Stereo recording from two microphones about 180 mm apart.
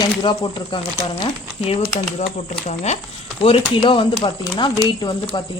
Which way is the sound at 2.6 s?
35° left (ahead or behind).